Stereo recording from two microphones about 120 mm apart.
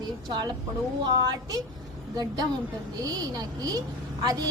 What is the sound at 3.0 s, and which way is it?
Speech, 30° right (ahead or behind).